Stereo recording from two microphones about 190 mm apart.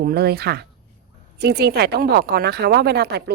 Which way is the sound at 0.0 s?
55° right (ahead or behind).